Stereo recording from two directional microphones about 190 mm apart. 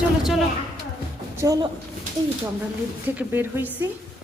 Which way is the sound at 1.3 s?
20° right (ahead or behind).